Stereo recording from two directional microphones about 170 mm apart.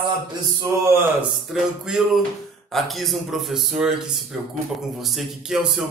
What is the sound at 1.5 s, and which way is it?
Speech, centre (ahead or behind).